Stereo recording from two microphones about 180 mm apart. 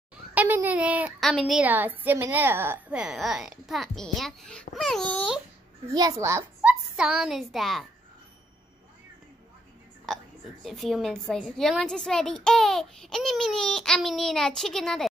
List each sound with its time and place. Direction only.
0.3 s speech: 10° right (ahead or behind)
5.9 s a child's voice: 20° right (ahead or behind)
6.7 s a child's voice: 5° right (ahead or behind)
10.1 s speech: centre (ahead or behind)